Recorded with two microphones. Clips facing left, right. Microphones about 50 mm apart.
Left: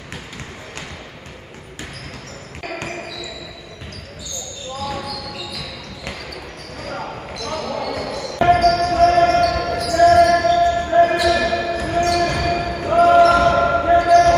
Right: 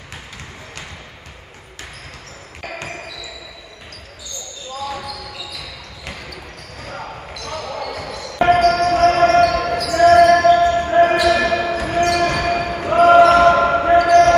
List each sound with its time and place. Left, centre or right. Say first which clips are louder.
2.6 s basketball bounce: left 2 dB; centre
5.0 s basketball bounce: left 2 dB; right
6.8 s basketball bounce: left 2 dB; centre
8.6 s basketball bounce: even; right